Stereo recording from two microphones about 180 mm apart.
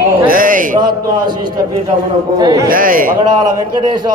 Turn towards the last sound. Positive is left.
turn(degrees=-50)  # may be behind; listen again after turning